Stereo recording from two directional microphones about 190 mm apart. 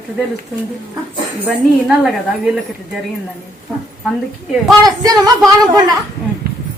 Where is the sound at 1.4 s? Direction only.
5° right (ahead or behind).